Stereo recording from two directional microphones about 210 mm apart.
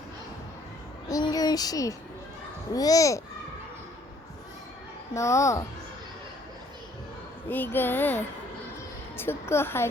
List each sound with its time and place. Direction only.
1.0 s a sound: 15° left (ahead or behind)
2.7 s a child's voice: 15° left (ahead or behind)
5.1 s a child's voice: 15° left (ahead or behind)
7.5 s a child's voice: 10° left (ahead or behind)